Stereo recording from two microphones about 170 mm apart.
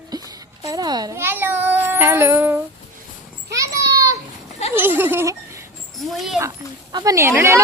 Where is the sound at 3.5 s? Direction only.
20° right (ahead or behind).